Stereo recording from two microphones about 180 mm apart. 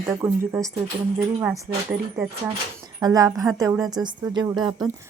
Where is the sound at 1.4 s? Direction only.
10° right (ahead or behind).